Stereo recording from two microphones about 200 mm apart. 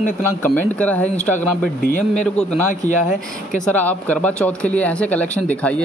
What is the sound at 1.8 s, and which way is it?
Speech, 40° left (ahead or behind).